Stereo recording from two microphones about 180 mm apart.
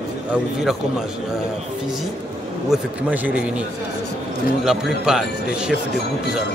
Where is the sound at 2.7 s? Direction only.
10° right (ahead or behind).